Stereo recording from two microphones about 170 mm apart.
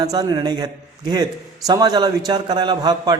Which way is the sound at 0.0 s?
20° right (ahead or behind).